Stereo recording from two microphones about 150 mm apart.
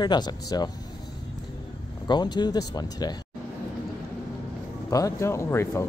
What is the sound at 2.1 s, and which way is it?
Speech, 30° left (ahead or behind).